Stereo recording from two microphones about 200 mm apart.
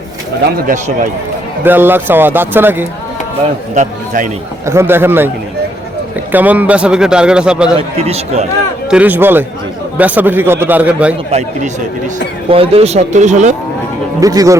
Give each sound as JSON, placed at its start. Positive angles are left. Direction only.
{"t": 0.7, "sound": "speech", "side_deg": -40}
{"t": 1.6, "sound": "speech", "side_deg": -10}
{"t": 3.8, "sound": "a man's voice", "side_deg": -40}
{"t": 4.6, "sound": "speech", "side_deg": -15}
{"t": 6.3, "sound": "a man's voice", "side_deg": -10}
{"t": 7.8, "sound": "speech", "side_deg": -30}
{"t": 8.9, "sound": "speech", "side_deg": -5}
{"t": 11.3, "sound": "speech", "side_deg": -35}
{"t": 14.2, "sound": "speech", "side_deg": -15}